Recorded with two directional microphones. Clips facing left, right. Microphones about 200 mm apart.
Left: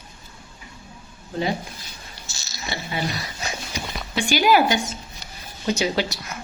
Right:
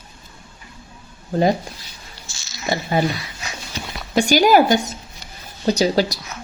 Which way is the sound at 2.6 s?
45° right (ahead or behind).